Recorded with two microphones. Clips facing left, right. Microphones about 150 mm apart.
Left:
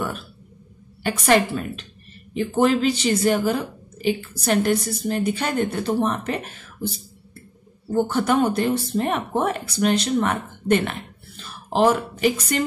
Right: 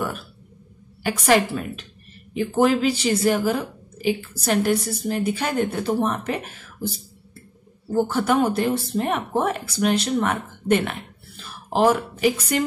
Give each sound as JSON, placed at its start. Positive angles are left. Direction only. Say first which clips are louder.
{"t": 1.0, "sound": "a woman's voice", "louder": "even", "side_deg": -5}
{"t": 7.9, "sound": "speech", "louder": "even", "side_deg": -5}